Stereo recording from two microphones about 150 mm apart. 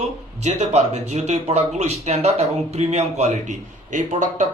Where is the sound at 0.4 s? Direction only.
50° right (ahead or behind).